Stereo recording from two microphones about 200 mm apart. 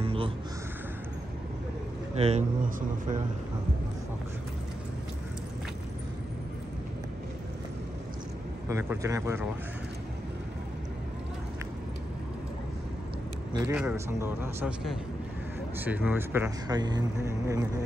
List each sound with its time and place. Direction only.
0.0 s a sound: 25° right (ahead or behind)
2.1 s speech: 30° right (ahead or behind)
8.6 s speech: 15° right (ahead or behind)
13.5 s speech: 15° right (ahead or behind)
15.8 s speech: 10° right (ahead or behind)